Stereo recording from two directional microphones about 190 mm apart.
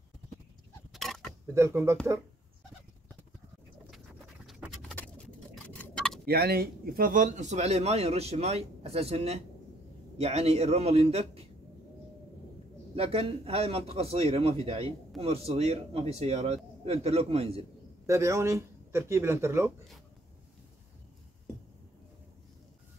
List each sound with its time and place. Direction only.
0.9 s a sound: centre (ahead or behind)
1.5 s speech: 15° right (ahead or behind)
4.5 s a sound: centre (ahead or behind)
6.2 s a man's voice: 55° right (ahead or behind); by 11.4 s 35° right (ahead or behind)
12.9 s a man's voice: 30° right (ahead or behind)
18.0 s speech: 15° right (ahead or behind)